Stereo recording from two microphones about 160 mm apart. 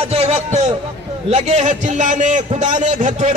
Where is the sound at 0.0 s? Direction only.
40° right (ahead or behind).